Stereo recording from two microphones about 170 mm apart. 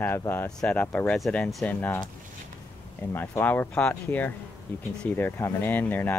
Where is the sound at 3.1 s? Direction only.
10° left (ahead or behind).